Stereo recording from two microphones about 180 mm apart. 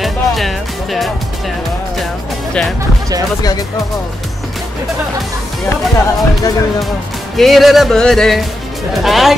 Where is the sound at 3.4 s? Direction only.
20° left (ahead or behind).